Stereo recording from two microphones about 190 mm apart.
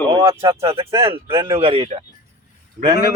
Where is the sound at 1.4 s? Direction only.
30° right (ahead or behind).